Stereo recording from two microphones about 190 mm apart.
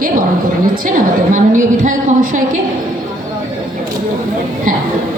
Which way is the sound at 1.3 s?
45° right (ahead or behind).